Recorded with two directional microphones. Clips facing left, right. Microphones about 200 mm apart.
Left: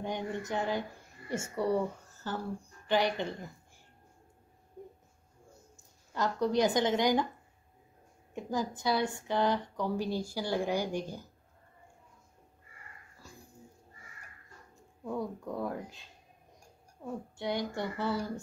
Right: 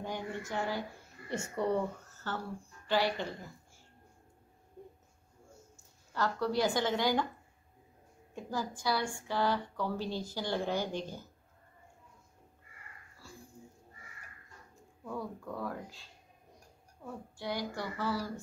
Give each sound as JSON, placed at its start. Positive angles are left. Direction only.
{"t": 0.0, "sound": "speech", "side_deg": 20}
{"t": 5.8, "sound": "speech", "side_deg": 20}
{"t": 8.4, "sound": "a woman's voice", "side_deg": 20}
{"t": 13.2, "sound": "dog", "side_deg": 15}
{"t": 15.0, "sound": "speech", "side_deg": 20}